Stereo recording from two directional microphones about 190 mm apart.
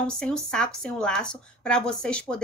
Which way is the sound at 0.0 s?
5° left (ahead or behind).